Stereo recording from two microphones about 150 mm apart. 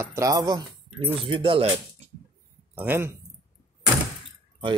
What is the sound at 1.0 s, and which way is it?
Speech, 35° right (ahead or behind).